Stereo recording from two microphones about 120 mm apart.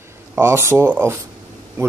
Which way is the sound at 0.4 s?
20° right (ahead or behind).